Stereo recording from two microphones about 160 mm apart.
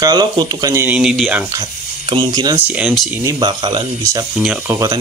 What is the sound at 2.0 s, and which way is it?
Speech, 25° right (ahead or behind).